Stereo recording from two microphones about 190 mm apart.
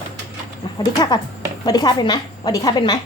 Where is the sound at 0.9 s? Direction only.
20° left (ahead or behind).